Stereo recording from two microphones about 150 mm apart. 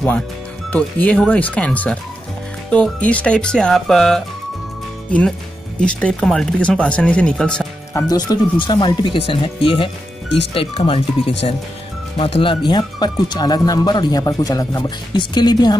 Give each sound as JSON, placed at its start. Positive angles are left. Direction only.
{"t": 0.7, "sound": "speech", "side_deg": 10}
{"t": 5.8, "sound": "speech", "side_deg": 5}
{"t": 7.9, "sound": "speech", "side_deg": 25}
{"t": 12.2, "sound": "speech", "side_deg": 40}